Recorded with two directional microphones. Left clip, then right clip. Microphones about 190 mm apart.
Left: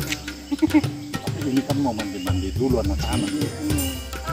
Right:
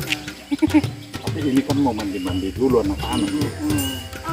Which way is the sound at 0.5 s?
Centre (ahead or behind).